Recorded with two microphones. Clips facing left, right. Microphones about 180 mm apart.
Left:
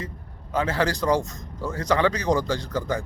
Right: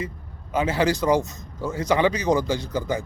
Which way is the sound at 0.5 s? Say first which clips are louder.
Right 2 dB; 20° right (ahead or behind).